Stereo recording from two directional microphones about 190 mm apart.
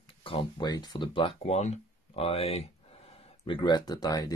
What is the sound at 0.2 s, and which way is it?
Speech, 30° left (ahead or behind).